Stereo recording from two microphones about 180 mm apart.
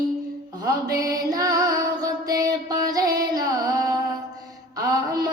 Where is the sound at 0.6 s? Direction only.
20° right (ahead or behind).